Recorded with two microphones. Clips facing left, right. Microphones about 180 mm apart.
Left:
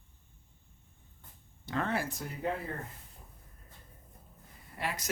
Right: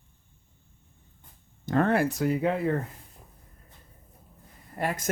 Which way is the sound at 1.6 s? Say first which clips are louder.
Right 10 dB; 50° right (ahead or behind).